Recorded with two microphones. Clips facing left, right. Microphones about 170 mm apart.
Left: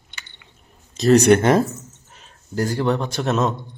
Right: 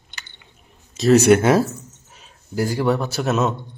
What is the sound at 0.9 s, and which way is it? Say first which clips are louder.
A man's voice: even; centre (ahead or behind).